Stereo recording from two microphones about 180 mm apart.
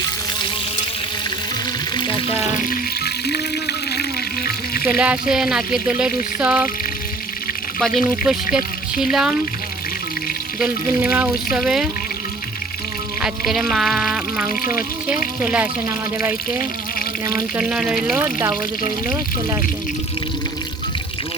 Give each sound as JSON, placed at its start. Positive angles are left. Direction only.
{"t": 2.6, "sound": "water", "side_deg": 60}
{"t": 4.9, "sound": "speech", "side_deg": -5}
{"t": 8.1, "sound": "speech", "side_deg": -5}
{"t": 10.6, "sound": "speech", "side_deg": -10}
{"t": 13.2, "sound": "speech", "side_deg": 0}
{"t": 18.2, "sound": "speech", "side_deg": -15}